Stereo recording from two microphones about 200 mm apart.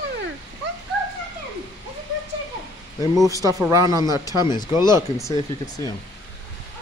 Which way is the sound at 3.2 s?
15° right (ahead or behind).